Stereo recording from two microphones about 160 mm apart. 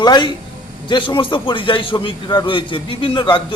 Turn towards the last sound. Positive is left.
turn(degrees=30)  # may be behind; listen again after turning